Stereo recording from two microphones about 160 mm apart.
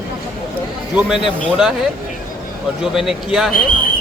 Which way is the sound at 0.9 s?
5° right (ahead or behind).